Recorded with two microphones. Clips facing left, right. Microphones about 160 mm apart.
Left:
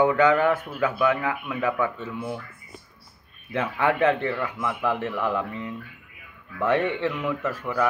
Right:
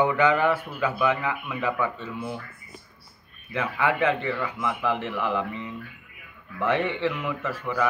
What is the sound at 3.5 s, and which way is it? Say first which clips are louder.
Speech: left 2 dB; 15° right (ahead or behind).